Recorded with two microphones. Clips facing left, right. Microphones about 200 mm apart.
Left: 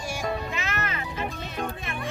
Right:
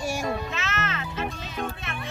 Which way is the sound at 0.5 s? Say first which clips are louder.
Even; 15° left (ahead or behind).